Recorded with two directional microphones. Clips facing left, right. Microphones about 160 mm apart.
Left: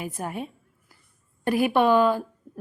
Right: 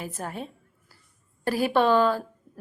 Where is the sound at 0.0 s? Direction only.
15° left (ahead or behind).